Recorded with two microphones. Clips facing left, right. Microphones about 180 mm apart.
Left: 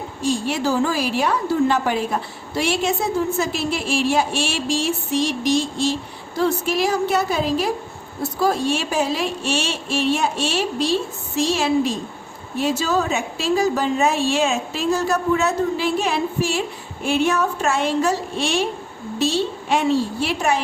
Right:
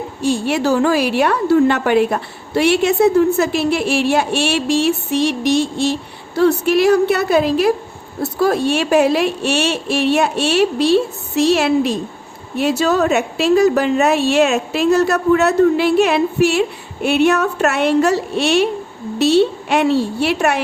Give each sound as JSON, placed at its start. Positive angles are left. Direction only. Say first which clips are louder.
{"t": 0.2, "sound": "a woman's voice", "louder": "right 4 dB", "side_deg": -65}